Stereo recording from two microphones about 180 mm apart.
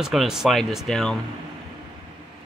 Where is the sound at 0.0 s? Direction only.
Centre (ahead or behind).